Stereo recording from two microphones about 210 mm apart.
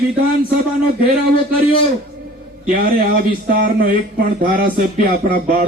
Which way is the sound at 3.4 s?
45° right (ahead or behind).